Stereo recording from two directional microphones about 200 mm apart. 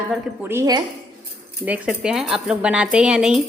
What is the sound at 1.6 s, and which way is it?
Speech, 5° right (ahead or behind).